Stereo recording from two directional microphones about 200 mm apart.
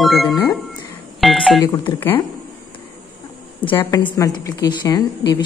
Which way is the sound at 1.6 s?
20° left (ahead or behind).